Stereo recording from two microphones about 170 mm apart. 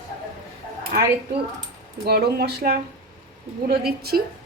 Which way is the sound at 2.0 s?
65° right (ahead or behind).